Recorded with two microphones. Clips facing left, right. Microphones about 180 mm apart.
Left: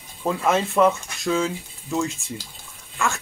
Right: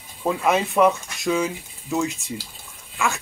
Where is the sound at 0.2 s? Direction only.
10° right (ahead or behind).